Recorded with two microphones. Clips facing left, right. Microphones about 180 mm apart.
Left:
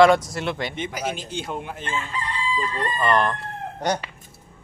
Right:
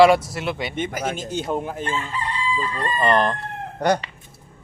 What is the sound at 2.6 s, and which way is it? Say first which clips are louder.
Chicken: right 1 dB; 35° right (ahead or behind).